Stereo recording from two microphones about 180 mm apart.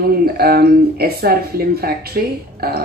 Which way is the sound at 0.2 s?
60° right (ahead or behind).